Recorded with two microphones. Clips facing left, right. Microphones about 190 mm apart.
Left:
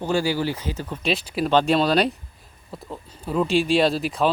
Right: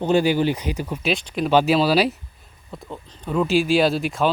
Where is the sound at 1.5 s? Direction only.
5° right (ahead or behind).